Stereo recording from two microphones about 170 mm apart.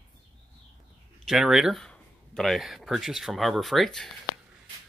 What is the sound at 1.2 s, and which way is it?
Speech, centre (ahead or behind).